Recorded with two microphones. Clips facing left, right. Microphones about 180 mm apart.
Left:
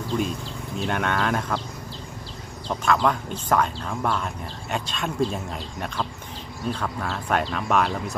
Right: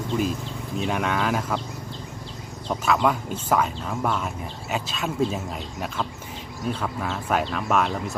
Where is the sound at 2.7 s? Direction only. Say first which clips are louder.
Even; 5° right (ahead or behind).